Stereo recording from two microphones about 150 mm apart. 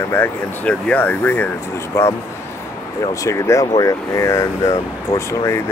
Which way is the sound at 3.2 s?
20° left (ahead or behind).